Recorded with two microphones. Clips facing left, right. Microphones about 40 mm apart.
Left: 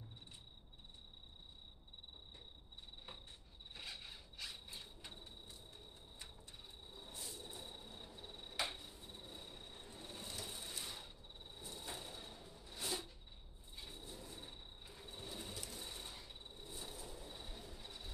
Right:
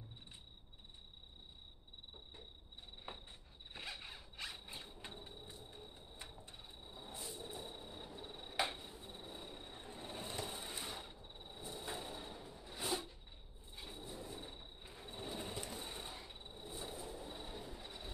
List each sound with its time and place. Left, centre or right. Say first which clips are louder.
3.1 s cricket: right 6 dB; right
3.7 s zipper: right 3 dB; right
9.8 s a sound: right 5 dB; right